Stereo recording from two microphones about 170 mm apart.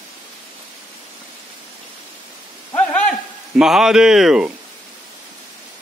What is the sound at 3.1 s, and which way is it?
Speech, centre (ahead or behind).